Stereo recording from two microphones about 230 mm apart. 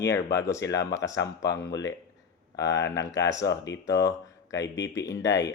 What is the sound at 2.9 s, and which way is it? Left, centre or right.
Speech, centre.